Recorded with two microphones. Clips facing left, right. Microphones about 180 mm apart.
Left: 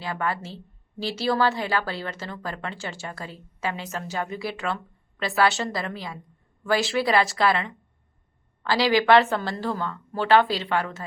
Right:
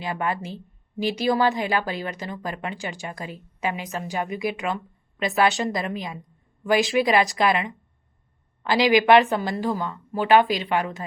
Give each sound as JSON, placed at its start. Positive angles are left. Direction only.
{"t": 0.0, "sound": "a woman's voice", "side_deg": -20}